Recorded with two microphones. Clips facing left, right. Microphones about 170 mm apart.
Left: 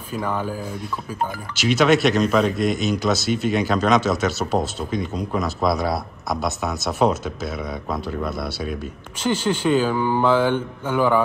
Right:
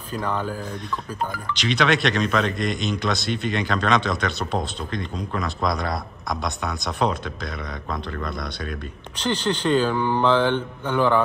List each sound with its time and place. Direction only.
0.1 s speech: 10° left (ahead or behind)